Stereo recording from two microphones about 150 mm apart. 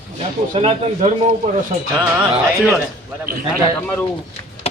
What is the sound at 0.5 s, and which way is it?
Speech, 40° right (ahead or behind).